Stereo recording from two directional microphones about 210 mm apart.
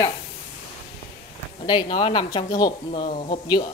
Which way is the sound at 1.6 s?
20° left (ahead or behind).